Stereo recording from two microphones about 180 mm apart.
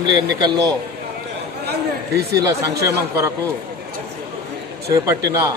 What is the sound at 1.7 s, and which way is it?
Chatter, 65° right (ahead or behind).